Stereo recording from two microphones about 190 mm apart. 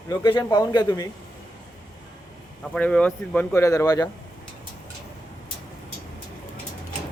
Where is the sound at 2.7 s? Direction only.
5° left (ahead or behind).